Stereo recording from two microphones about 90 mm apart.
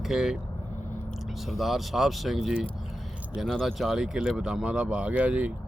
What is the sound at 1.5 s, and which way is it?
Speech, centre (ahead or behind).